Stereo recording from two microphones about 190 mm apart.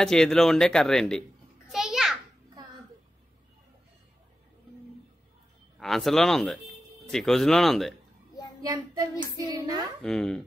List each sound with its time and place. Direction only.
0.0 s speech: 5° left (ahead or behind)
1.7 s a sound: centre (ahead or behind)
5.8 s speech: centre (ahead or behind)
8.5 s child singing: 20° right (ahead or behind)
9.4 s speech: 20° right (ahead or behind)
10.0 s speech: 5° left (ahead or behind)